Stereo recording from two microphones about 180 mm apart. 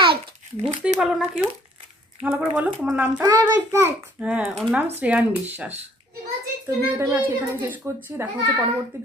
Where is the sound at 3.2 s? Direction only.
20° right (ahead or behind).